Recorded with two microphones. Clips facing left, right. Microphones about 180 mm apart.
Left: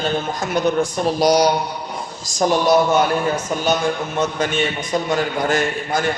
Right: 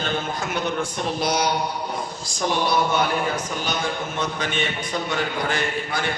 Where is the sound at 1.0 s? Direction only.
40° left (ahead or behind).